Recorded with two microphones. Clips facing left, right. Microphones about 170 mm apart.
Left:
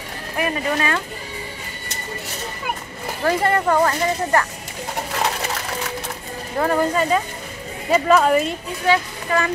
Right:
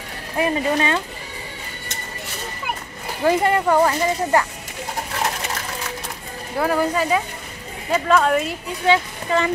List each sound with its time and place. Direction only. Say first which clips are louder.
0.4 s speech: right 2 dB; 25° right (ahead or behind)
3.3 s speech: right 1 dB; 15° right (ahead or behind)
6.6 s speech: left 1 dB; 5° right (ahead or behind)
8.8 s speech: right 1 dB; 25° right (ahead or behind)